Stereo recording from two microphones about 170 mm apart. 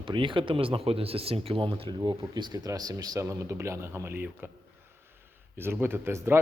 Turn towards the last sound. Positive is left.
turn(degrees=-15)  # may be behind; listen again after turning